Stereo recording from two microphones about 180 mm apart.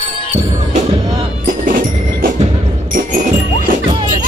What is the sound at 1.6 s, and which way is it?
Music, 50° right (ahead or behind).